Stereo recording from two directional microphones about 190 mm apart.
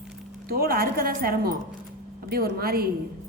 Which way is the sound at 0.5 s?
55° right (ahead or behind).